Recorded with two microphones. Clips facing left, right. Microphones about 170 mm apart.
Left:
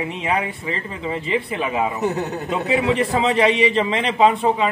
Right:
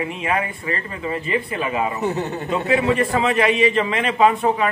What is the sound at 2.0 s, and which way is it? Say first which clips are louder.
A man's voice: even; 10° left (ahead or behind).